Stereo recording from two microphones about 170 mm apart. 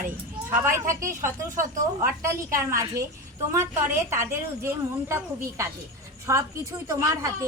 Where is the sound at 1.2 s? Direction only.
50° right (ahead or behind).